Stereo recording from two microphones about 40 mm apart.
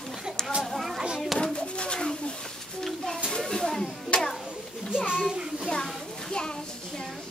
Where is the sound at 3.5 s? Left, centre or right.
Centre.